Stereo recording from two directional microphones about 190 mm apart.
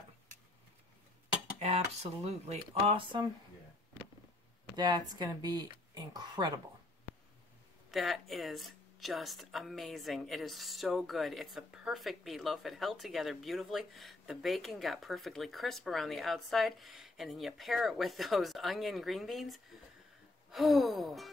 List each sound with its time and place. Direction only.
2.2 s speech: 35° right (ahead or behind)
4.7 s speech: 20° right (ahead or behind)
7.9 s speech: centre (ahead or behind)